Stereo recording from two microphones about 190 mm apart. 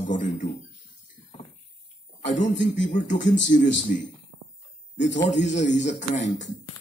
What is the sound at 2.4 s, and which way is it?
Speech, 40° left (ahead or behind).